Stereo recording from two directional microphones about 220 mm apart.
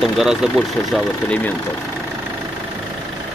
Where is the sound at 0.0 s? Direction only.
Centre (ahead or behind).